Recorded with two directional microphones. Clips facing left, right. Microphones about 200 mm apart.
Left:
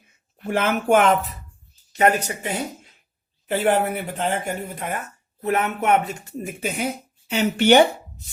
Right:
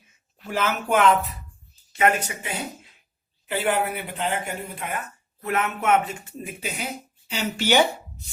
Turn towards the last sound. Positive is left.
turn(degrees=55)  # may be behind; listen again after turning